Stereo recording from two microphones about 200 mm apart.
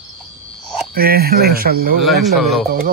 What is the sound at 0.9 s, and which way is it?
Speech, 50° right (ahead or behind).